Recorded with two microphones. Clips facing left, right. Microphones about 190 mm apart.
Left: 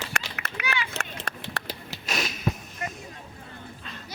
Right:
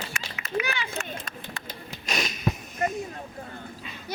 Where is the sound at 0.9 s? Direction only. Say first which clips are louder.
Right 1 dB; 65° left (ahead or behind).